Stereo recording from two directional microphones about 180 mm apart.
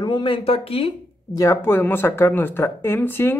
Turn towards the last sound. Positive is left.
turn(degrees=10)  # may be behind; listen again after turning